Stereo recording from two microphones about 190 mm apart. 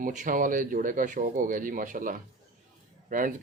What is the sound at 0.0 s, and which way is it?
Speech, 45° right (ahead or behind).